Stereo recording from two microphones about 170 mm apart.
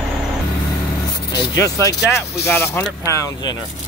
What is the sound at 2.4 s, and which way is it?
Speech, 15° left (ahead or behind).